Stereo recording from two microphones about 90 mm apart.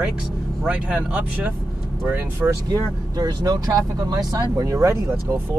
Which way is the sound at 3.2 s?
45° right (ahead or behind).